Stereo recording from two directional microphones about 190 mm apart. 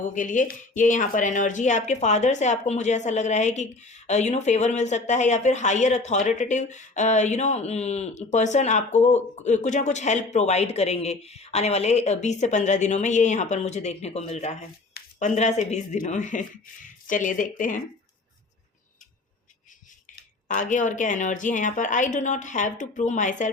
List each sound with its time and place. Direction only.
0.0 s speech: 45° left (ahead or behind)
20.5 s speech: 40° left (ahead or behind)